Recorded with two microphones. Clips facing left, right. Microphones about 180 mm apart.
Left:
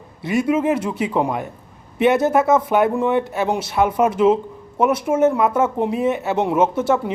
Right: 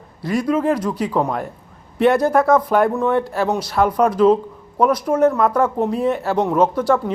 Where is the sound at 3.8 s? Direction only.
5° left (ahead or behind).